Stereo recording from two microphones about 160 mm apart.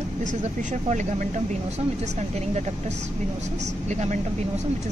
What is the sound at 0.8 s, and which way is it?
Speech, 50° right (ahead or behind).